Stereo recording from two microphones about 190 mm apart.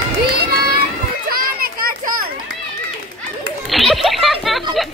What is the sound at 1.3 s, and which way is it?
Children playing, 50° right (ahead or behind).